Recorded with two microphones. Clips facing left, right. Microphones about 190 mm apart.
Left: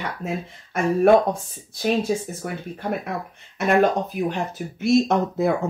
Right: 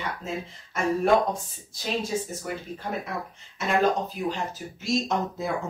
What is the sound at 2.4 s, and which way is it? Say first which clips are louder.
Speech: left 4 dB; 60° left (ahead or behind).